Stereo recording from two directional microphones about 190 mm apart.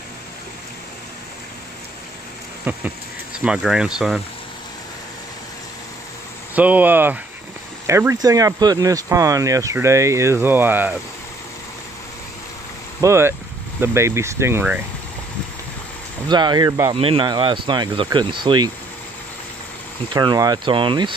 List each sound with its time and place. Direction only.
2.7 s speech: 10° right (ahead or behind)
6.5 s speech: 10° right (ahead or behind)
13.0 s speech: 15° right (ahead or behind)
16.3 s speech: 25° right (ahead or behind)
16.9 s speech: 30° right (ahead or behind)
20.1 s speech: 20° right (ahead or behind)